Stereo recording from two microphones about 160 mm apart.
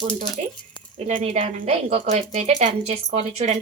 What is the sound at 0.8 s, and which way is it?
Keys jangling, 30° left (ahead or behind).